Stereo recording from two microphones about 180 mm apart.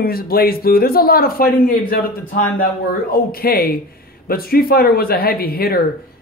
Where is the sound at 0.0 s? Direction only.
55° left (ahead or behind).